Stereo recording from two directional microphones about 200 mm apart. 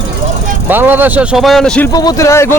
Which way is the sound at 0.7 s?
10° right (ahead or behind).